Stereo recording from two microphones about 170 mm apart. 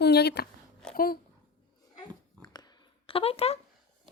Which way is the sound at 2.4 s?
25° left (ahead or behind).